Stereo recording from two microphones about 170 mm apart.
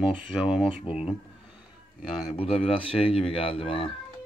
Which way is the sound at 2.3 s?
35° left (ahead or behind).